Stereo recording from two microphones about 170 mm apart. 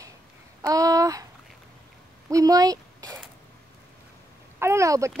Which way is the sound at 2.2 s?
20° right (ahead or behind).